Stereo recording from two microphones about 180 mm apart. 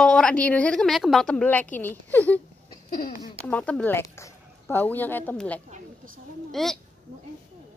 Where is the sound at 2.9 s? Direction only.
50° left (ahead or behind).